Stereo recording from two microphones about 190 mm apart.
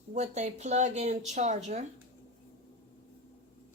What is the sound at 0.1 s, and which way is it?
Speech, 35° right (ahead or behind).